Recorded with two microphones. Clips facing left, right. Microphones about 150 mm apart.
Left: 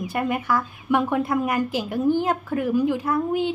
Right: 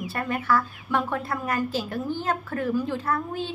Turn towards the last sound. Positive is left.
turn(degrees=15)  # may be behind; listen again after turning